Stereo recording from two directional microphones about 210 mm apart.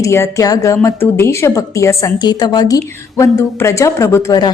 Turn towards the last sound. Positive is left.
turn(degrees=15)  # may be behind; listen again after turning